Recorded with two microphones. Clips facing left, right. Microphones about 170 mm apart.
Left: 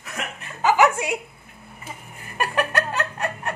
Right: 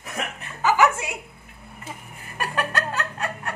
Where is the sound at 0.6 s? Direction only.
20° left (ahead or behind).